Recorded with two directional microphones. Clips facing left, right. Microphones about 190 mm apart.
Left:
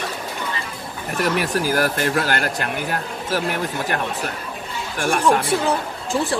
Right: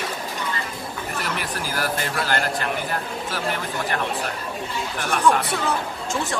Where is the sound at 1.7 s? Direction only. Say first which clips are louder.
Left 4 dB; 45° left (ahead or behind).